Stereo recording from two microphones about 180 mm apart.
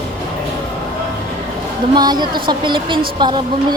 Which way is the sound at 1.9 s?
25° right (ahead or behind).